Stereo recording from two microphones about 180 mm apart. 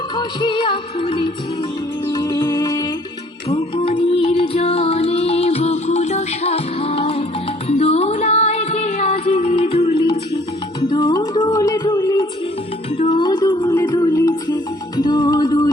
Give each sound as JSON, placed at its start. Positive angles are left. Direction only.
{"t": 0.2, "sound": "music", "side_deg": 25}
{"t": 3.5, "sound": "music", "side_deg": 30}